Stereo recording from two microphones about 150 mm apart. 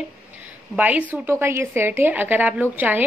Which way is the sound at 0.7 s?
10° right (ahead or behind).